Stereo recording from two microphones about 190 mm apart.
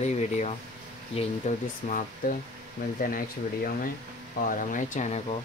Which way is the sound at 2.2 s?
50° left (ahead or behind).